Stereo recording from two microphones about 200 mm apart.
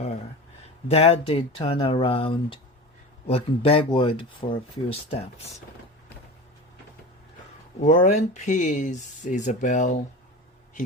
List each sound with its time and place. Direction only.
0.9 s speech: 30° left (ahead or behind)
7.8 s speech: 40° left (ahead or behind)